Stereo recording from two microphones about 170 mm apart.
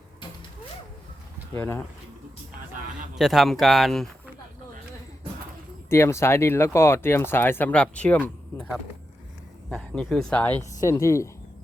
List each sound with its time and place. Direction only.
1.5 s speech: 10° left (ahead or behind)
3.2 s speech: centre (ahead or behind)
5.9 s speech: 15° left (ahead or behind)
9.6 s speech: 5° left (ahead or behind)